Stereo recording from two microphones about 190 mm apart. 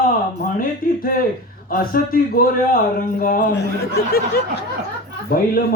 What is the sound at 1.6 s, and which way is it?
A man's voice, 50° left (ahead or behind).